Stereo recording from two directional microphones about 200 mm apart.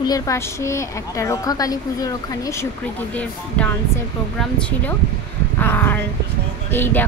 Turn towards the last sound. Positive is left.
turn(degrees=10)  # may be behind; listen again after turning